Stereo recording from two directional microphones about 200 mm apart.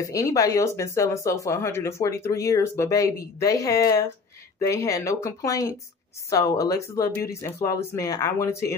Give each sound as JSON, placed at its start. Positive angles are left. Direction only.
{"t": 0.0, "sound": "speech", "side_deg": 15}